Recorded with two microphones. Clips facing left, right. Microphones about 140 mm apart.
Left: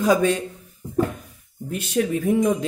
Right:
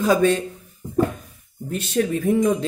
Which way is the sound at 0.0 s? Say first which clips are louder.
Right 1 dB; 15° left (ahead or behind).